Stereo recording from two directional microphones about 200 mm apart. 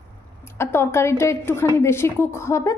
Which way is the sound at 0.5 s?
10° left (ahead or behind).